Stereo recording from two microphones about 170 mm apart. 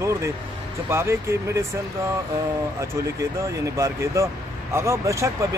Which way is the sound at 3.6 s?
15° right (ahead or behind).